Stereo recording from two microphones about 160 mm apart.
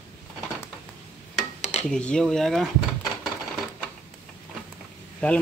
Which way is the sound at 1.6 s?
45° left (ahead or behind).